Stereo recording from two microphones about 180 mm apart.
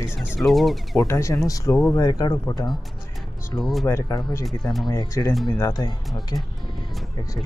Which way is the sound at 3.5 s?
Centre (ahead or behind).